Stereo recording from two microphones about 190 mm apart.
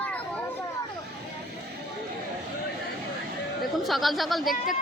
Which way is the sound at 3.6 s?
Centre (ahead or behind).